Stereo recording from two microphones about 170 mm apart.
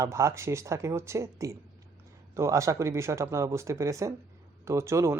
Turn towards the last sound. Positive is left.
turn(degrees=-15)  # may be behind; listen again after turning